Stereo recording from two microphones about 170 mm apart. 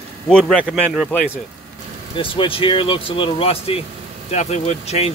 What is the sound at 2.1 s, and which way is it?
Speech, 30° left (ahead or behind).